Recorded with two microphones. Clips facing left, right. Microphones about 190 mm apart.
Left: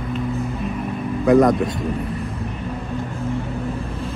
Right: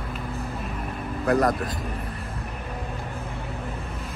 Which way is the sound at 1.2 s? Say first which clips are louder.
Left 8 dB; centre (ahead or behind).